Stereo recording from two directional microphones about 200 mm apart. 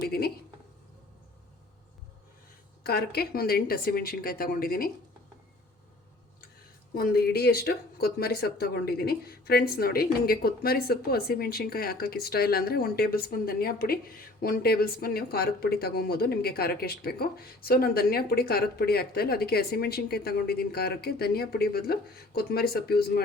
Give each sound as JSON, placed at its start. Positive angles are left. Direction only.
{"t": 0.0, "sound": "speech", "side_deg": 50}
{"t": 2.8, "sound": "speech", "side_deg": 50}
{"t": 6.9, "sound": "speech", "side_deg": 50}